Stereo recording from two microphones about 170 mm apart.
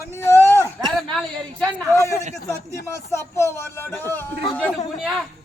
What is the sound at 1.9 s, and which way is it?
A woman's voice, 15° left (ahead or behind).